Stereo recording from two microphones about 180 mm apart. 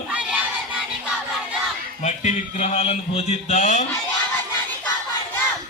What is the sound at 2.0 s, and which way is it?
Speech, 40° left (ahead or behind).